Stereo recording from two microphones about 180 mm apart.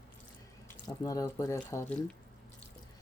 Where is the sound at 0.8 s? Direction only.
20° left (ahead or behind).